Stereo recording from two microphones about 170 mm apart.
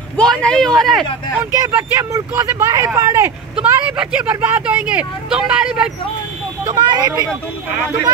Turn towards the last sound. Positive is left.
turn(degrees=-25)  # may be behind; listen again after turning